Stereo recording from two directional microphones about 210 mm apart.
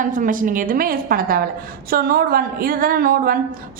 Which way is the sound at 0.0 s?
40° right (ahead or behind).